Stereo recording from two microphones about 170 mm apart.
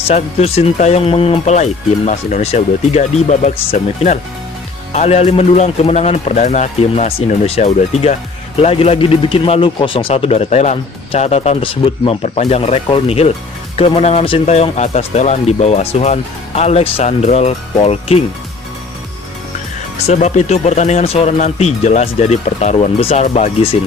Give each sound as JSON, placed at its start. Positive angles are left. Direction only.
{"t": 0.1, "sound": "speech", "side_deg": 40}
{"t": 20.1, "sound": "speech", "side_deg": 40}